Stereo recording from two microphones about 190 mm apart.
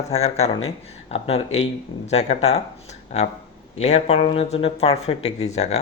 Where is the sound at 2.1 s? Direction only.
35° left (ahead or behind).